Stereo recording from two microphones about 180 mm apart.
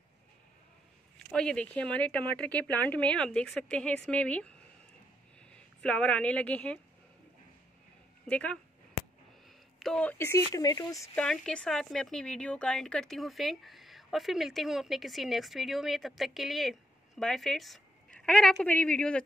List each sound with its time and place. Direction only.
1.3 s a woman's voice: 5° left (ahead or behind)
8.3 s a sound: 5° left (ahead or behind)
9.8 s speech: 5° left (ahead or behind); by 11.1 s 20° left (ahead or behind)
11.1 s speech: 5° left (ahead or behind)